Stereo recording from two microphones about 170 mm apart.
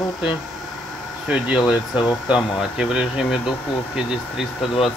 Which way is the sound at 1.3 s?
Centre (ahead or behind).